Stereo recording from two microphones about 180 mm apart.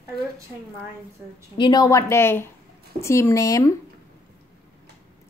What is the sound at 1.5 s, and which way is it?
A woman's voice, 25° left (ahead or behind).